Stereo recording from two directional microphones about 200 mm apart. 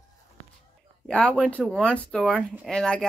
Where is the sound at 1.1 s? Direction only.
5° left (ahead or behind).